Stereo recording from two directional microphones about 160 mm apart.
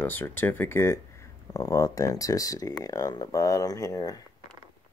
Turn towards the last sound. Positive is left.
turn(degrees=20)  # may be behind; listen again after turning